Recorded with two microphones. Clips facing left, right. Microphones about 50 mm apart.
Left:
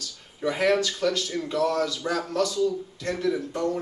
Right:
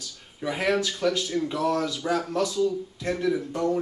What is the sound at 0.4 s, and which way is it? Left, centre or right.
Speech, centre.